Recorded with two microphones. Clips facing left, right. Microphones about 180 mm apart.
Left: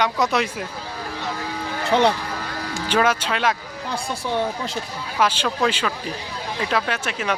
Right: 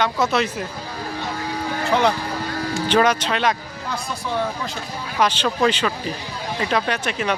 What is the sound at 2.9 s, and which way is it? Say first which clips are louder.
Speech: right 2 dB; 5° left (ahead or behind).